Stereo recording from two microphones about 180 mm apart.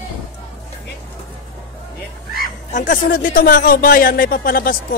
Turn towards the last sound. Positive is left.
turn(degrees=50)  # may be behind; listen again after turning